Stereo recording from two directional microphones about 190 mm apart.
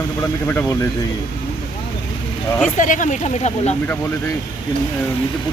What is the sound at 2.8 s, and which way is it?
Speech, 40° left (ahead or behind).